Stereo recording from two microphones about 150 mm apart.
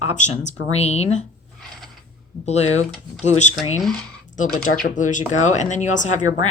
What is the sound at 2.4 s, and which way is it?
Speech, 45° left (ahead or behind).